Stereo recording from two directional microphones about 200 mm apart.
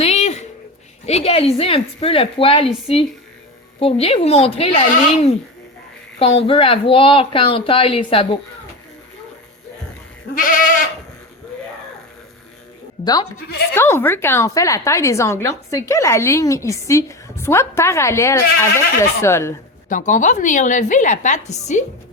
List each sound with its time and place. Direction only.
0.0 s a sound: 35° left (ahead or behind)
1.0 s a woman's voice: 30° left (ahead or behind)
10.3 s goat: 45° left (ahead or behind)
13.7 s speech: 10° left (ahead or behind)
19.9 s a woman's voice: 40° left (ahead or behind)